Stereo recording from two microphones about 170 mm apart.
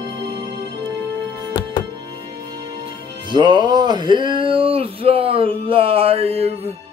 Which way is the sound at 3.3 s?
25° right (ahead or behind).